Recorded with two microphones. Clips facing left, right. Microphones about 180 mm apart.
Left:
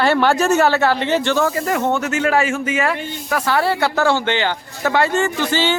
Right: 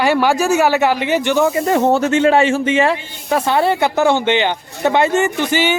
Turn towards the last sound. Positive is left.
turn(degrees=-15)  # may be behind; listen again after turning